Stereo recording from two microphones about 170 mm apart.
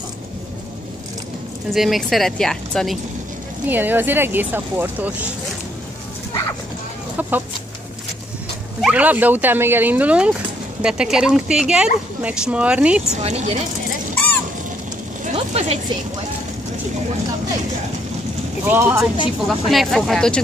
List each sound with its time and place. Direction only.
1.7 s speech: centre (ahead or behind)
3.6 s speech: 10° right (ahead or behind)
7.2 s chicken: 10° right (ahead or behind)
8.8 s speech: 10° right (ahead or behind)
13.1 s speech: 40° right (ahead or behind)
14.1 s a sound: 10° left (ahead or behind)
15.3 s a sound: 35° right (ahead or behind)
18.7 s speech: 10° right (ahead or behind)
19.4 s speech: centre (ahead or behind)